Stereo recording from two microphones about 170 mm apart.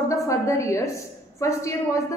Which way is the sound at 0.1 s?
20° left (ahead or behind).